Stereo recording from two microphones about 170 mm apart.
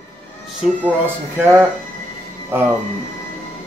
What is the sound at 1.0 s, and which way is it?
Speech, 10° right (ahead or behind).